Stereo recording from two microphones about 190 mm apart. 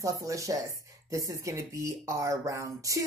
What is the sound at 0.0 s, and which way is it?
A woman's voice, 15° right (ahead or behind).